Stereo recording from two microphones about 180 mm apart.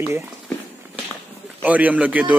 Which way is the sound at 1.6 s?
10° right (ahead or behind).